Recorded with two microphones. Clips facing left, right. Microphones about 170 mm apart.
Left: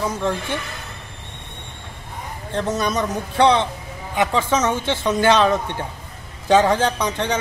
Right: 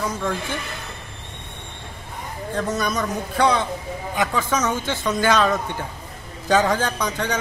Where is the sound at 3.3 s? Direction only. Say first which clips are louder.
Left 4 dB; 25° left (ahead or behind).